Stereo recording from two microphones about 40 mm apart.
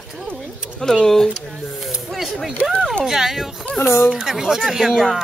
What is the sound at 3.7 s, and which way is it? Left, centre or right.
Speech, centre.